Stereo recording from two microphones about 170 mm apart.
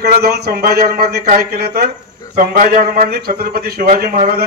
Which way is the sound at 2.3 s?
55° right (ahead or behind).